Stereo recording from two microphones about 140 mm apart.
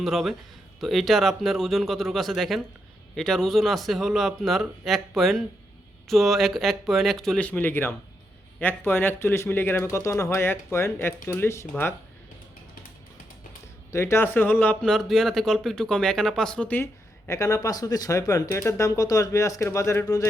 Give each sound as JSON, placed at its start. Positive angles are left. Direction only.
{"t": 0.0, "sound": "a man's voice", "side_deg": 0}
{"t": 13.9, "sound": "speech", "side_deg": 20}